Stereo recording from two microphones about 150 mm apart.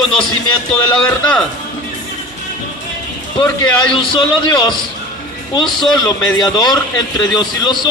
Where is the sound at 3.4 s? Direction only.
35° left (ahead or behind).